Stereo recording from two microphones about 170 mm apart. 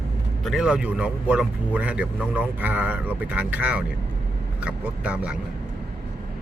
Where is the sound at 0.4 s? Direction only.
5° right (ahead or behind).